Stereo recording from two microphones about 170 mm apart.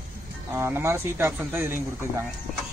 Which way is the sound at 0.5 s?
15° right (ahead or behind).